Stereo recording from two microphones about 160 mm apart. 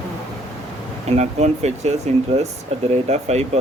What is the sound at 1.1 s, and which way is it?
Speech, 45° right (ahead or behind).